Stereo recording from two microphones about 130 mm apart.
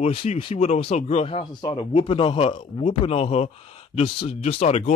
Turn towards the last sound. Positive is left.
turn(degrees=55)  # may be behind; listen again after turning